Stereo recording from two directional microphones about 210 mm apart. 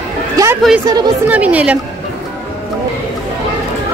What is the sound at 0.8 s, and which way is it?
Speech, 20° right (ahead or behind).